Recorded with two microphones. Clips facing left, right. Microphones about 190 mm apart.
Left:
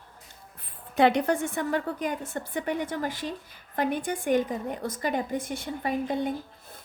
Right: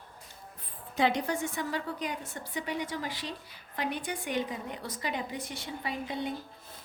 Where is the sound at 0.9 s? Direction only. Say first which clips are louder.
Left 6 dB; 60° left (ahead or behind).